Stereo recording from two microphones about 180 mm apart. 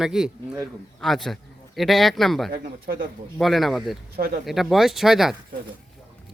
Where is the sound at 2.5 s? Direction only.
55° right (ahead or behind).